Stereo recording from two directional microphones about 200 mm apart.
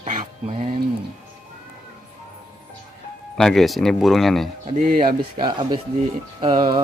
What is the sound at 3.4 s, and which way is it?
Speech, centre (ahead or behind).